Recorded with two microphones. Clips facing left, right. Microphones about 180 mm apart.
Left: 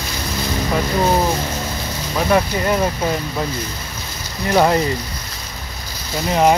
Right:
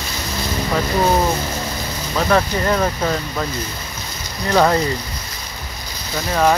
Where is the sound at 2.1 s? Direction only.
15° left (ahead or behind).